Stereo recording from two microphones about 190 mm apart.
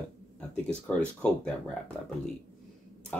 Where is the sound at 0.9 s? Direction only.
10° left (ahead or behind).